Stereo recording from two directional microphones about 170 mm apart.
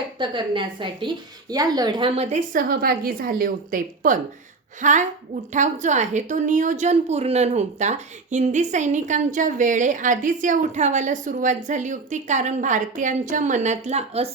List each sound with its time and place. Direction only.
0.2 s a woman's voice: 30° right (ahead or behind)